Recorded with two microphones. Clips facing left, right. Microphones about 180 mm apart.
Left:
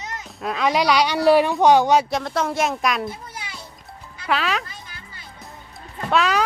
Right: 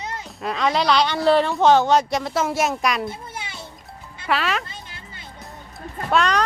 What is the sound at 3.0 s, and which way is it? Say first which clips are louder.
Music: right 1 dB; 25° right (ahead or behind).